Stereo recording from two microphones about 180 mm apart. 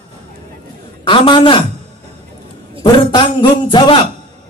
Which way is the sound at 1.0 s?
30° left (ahead or behind).